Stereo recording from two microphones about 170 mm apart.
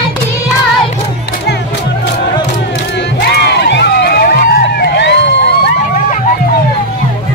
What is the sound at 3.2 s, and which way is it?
Crowd, 70° left (ahead or behind).